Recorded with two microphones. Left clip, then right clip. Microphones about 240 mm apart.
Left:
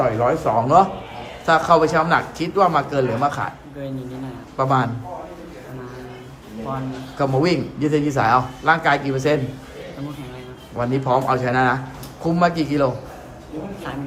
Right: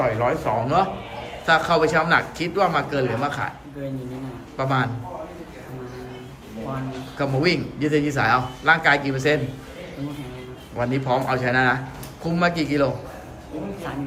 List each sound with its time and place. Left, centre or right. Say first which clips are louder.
0.0 s a man's voice: left 3 dB; centre
4.5 s a man's voice: left 4 dB; centre
7.2 s a man's voice: left 3 dB; centre
10.8 s a man's voice: left 3 dB; centre